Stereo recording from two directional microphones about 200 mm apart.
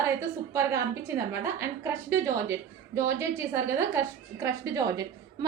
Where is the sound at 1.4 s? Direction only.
15° right (ahead or behind).